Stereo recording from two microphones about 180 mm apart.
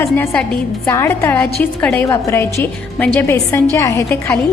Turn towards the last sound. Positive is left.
turn(degrees=15)  # may be behind; listen again after turning